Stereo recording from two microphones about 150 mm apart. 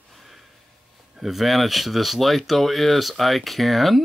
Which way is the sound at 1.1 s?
Centre (ahead or behind).